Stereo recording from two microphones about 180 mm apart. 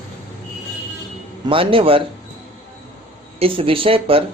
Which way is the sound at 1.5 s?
30° right (ahead or behind).